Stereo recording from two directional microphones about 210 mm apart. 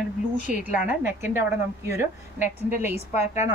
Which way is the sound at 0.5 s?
5° right (ahead or behind).